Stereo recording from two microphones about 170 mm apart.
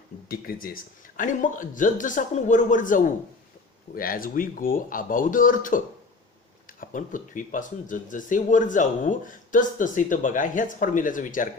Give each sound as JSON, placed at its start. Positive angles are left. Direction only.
{"t": 0.3, "sound": "a man's voice", "side_deg": 60}